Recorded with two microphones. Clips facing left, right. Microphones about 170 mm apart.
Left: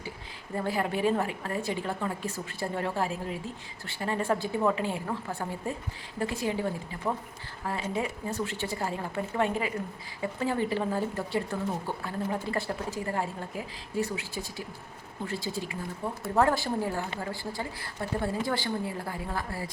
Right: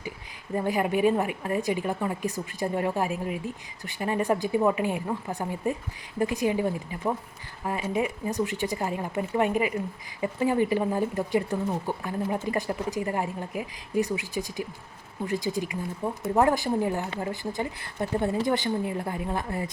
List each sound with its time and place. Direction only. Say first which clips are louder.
0.5 s a woman's voice: right 4 dB; 15° right (ahead or behind)
18.0 s a woman's voice: right 5 dB; 20° right (ahead or behind)